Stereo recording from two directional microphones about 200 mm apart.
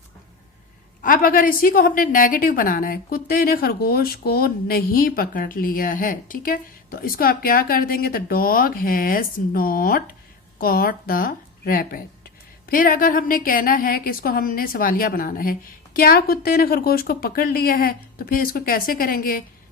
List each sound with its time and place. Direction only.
1.0 s a woman's voice: 45° left (ahead or behind)